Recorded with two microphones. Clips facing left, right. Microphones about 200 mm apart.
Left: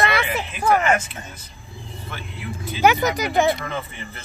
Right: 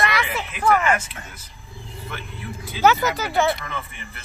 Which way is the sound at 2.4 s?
15° left (ahead or behind).